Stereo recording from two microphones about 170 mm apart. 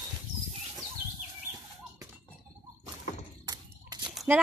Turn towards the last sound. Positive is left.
turn(degrees=-25)  # may be behind; listen again after turning